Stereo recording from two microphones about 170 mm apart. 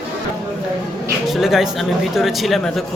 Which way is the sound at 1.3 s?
Centre (ahead or behind).